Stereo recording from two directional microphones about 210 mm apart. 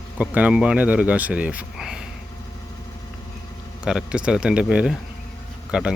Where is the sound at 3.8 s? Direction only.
5° right (ahead or behind).